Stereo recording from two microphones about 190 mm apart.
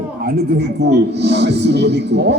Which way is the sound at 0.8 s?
65° right (ahead or behind).